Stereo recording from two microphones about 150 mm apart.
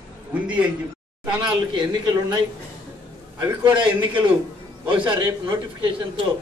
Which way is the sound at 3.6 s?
30° right (ahead or behind).